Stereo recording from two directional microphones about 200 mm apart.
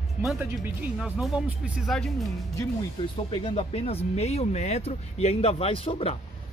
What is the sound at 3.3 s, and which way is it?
Speech, 30° left (ahead or behind).